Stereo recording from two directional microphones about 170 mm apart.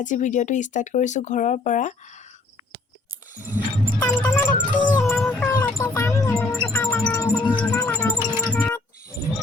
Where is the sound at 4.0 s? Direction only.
10° left (ahead or behind).